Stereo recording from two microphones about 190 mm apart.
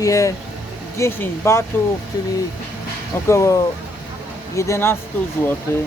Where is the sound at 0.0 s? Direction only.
15° left (ahead or behind).